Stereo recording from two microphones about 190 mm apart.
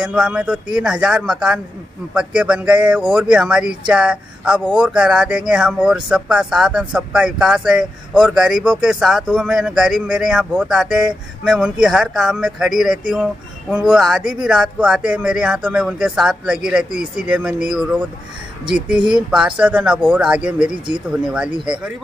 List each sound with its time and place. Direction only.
0.0 s speech: 5° right (ahead or behind)
19.0 s speech: 5° right (ahead or behind)